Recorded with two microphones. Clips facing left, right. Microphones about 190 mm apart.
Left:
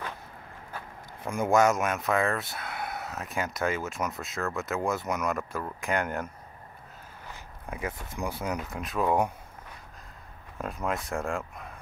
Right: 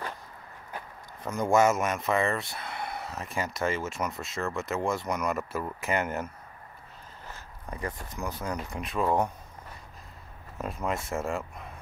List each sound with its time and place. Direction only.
1.2 s speech: 10° left (ahead or behind)
1.5 s speech: centre (ahead or behind)
7.3 s a sound: 10° left (ahead or behind)
8.1 s speech: 10° left (ahead or behind)
10.6 s speech: centre (ahead or behind)